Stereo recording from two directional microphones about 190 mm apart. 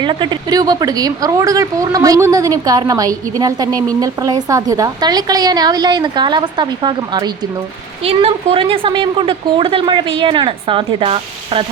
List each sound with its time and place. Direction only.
0.0 s speech: 25° right (ahead or behind)